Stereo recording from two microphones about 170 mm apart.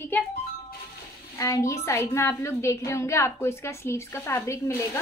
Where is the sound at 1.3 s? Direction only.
20° left (ahead or behind).